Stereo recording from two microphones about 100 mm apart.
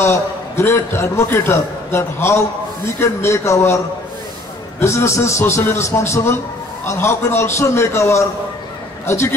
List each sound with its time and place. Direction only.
0.0 s a man's voice: 25° left (ahead or behind)